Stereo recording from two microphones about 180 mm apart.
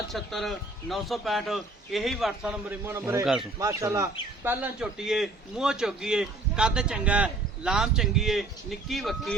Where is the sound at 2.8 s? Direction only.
15° right (ahead or behind).